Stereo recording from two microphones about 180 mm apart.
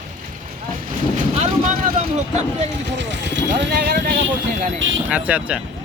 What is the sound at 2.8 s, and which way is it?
Speech, 75° right (ahead or behind).